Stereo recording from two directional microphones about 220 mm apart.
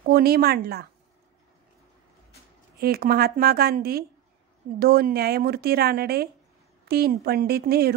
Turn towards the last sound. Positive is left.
turn(degrees=-45)  # may be behind; listen again after turning